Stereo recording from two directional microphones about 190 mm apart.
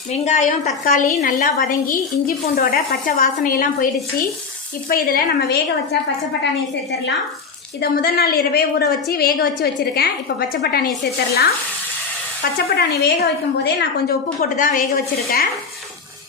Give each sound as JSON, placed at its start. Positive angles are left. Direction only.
{"t": 0.1, "sound": "a woman's voice", "side_deg": 40}
{"t": 4.9, "sound": "a woman's voice", "side_deg": 50}
{"t": 7.8, "sound": "a woman's voice", "side_deg": 55}
{"t": 14.1, "sound": "a woman's voice", "side_deg": 45}